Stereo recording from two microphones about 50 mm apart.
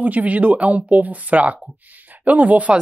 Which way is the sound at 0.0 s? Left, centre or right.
Right.